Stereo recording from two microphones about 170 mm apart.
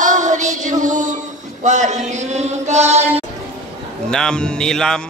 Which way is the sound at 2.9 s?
40° right (ahead or behind).